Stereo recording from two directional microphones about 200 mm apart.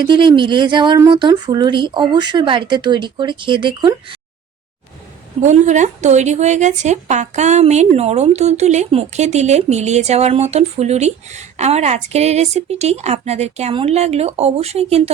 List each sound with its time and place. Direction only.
0.0 s speech: 25° right (ahead or behind)
5.4 s a woman's voice: 35° right (ahead or behind)